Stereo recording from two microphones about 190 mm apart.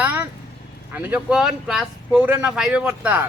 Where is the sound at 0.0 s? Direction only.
10° right (ahead or behind).